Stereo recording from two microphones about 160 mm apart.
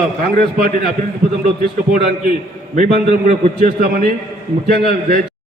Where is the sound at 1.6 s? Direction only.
55° right (ahead or behind).